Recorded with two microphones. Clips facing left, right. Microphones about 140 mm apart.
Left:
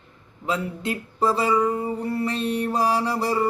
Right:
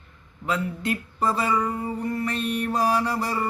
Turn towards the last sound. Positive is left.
turn(degrees=25)  # may be behind; listen again after turning